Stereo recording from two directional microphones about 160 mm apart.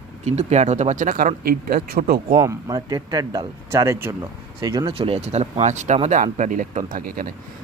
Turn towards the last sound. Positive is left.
turn(degrees=-55)  # may be behind; listen again after turning